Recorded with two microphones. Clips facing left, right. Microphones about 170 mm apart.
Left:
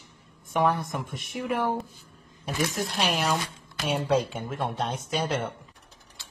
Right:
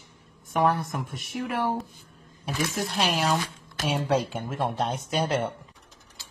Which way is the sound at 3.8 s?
10° right (ahead or behind).